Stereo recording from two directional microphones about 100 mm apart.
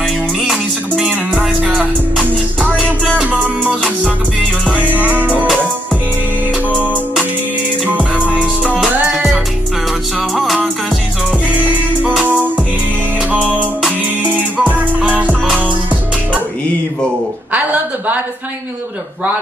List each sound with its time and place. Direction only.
0.4 s music: 5° right (ahead or behind)
6.8 s music: 10° right (ahead or behind)
12.2 s music: 15° right (ahead or behind)
13.8 s music: 15° right (ahead or behind)
17.5 s a sound: 15° right (ahead or behind)